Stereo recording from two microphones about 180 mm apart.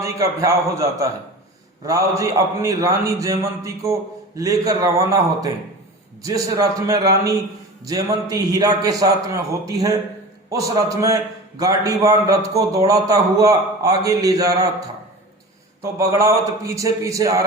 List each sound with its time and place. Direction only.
0.0 s a man's voice: 15° right (ahead or behind)
15.8 s a man's voice: 15° right (ahead or behind)